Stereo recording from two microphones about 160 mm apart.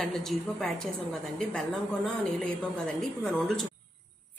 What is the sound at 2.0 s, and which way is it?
A woman's voice, 5° left (ahead or behind).